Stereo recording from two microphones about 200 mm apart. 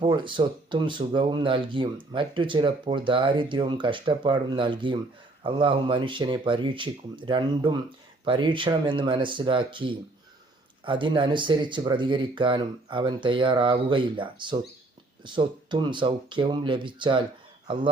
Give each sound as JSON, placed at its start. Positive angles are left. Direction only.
{"t": 0.0, "sound": "speech", "side_deg": -25}